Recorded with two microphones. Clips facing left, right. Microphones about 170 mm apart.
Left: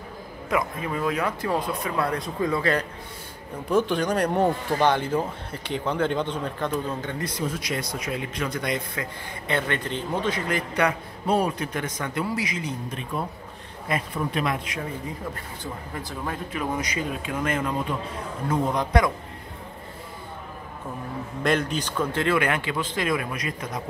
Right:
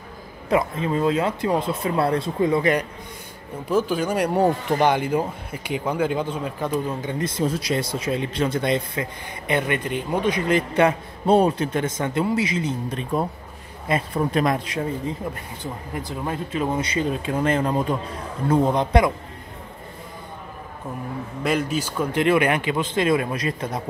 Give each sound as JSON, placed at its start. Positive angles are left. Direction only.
{"t": 0.5, "sound": "a man's voice", "side_deg": -25}
{"t": 1.8, "sound": "a man's voice", "side_deg": -30}
{"t": 3.7, "sound": "speech", "side_deg": -5}
{"t": 9.5, "sound": "a man's voice", "side_deg": -15}
{"t": 15.6, "sound": "a man's voice", "side_deg": -20}
{"t": 21.4, "sound": "a man's voice", "side_deg": -5}